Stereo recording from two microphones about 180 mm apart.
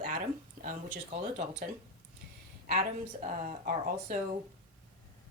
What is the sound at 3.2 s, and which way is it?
Speech, 50° right (ahead or behind).